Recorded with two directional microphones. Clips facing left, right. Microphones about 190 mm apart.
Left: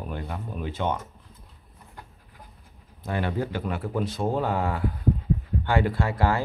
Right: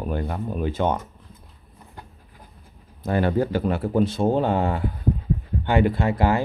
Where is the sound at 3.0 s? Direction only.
40° right (ahead or behind).